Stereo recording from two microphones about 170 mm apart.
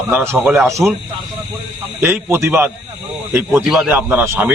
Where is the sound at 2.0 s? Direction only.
15° right (ahead or behind).